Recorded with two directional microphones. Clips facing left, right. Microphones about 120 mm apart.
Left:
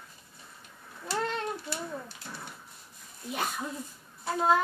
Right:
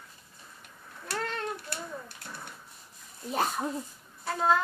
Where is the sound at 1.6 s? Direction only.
60° right (ahead or behind).